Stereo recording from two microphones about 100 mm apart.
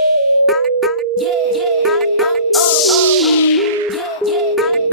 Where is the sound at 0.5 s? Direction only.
Centre (ahead or behind).